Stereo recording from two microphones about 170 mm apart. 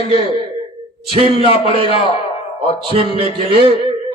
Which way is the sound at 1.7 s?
30° right (ahead or behind).